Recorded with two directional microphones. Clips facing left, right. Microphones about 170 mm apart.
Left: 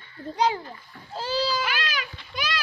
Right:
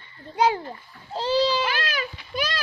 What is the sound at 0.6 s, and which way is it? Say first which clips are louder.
Speech: right 3 dB; 30° right (ahead or behind).